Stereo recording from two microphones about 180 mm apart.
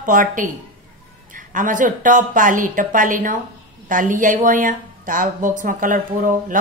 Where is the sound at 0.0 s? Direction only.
50° right (ahead or behind).